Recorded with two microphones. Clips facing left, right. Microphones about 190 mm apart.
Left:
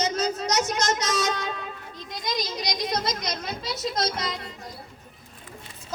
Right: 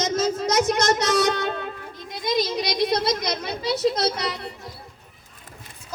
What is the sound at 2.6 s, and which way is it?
Speech, 65° right (ahead or behind).